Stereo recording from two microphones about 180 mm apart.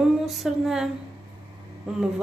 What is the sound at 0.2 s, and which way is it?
Speech, centre (ahead or behind).